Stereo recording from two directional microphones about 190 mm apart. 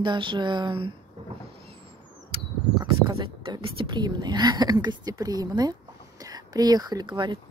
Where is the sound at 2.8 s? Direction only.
25° right (ahead or behind).